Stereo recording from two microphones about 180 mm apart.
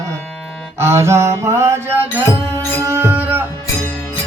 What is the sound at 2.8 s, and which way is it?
Music, 15° right (ahead or behind).